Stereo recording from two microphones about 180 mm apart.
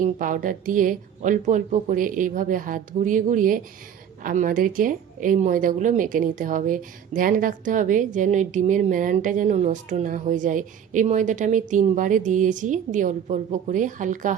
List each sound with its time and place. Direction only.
0.0 s speech: 50° right (ahead or behind)